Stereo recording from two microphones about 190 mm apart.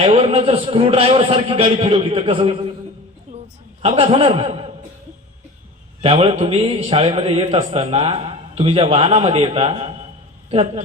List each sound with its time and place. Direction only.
0.0 s a man's voice: 35° right (ahead or behind)
3.3 s a sound: 40° right (ahead or behind)
3.8 s speech: 30° right (ahead or behind)
6.0 s a man's voice: 30° right (ahead or behind)